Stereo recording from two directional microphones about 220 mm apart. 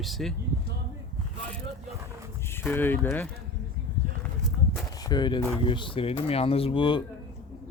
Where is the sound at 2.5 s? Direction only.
10° left (ahead or behind).